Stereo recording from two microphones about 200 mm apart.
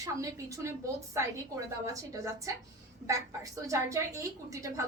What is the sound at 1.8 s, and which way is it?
A woman's voice, 15° right (ahead or behind).